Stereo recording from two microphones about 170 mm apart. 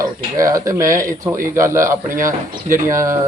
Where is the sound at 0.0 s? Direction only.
20° right (ahead or behind).